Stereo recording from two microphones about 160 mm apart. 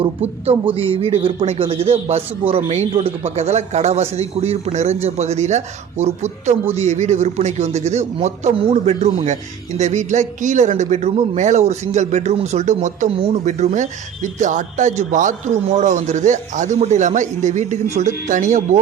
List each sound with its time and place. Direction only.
0.0 s a man's voice: 40° right (ahead or behind)